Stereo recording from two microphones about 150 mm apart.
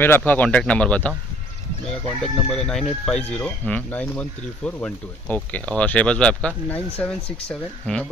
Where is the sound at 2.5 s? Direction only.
5° left (ahead or behind).